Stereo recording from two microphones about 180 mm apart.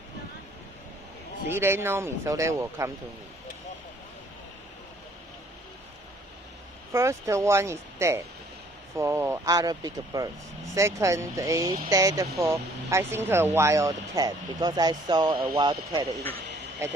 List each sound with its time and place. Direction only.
1.5 s speech: 15° right (ahead or behind)
6.9 s speech: 15° right (ahead or behind)